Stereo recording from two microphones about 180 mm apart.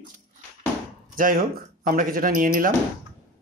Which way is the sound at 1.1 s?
50° right (ahead or behind).